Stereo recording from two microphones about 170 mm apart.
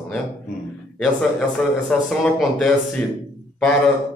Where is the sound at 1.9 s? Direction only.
5° left (ahead or behind).